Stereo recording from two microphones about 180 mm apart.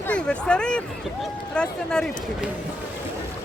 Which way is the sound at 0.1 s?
5° left (ahead or behind).